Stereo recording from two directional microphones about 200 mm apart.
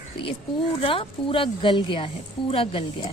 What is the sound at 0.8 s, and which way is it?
A woman's voice, 25° left (ahead or behind).